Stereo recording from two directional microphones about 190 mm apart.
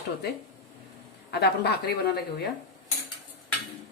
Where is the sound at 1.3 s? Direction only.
55° left (ahead or behind).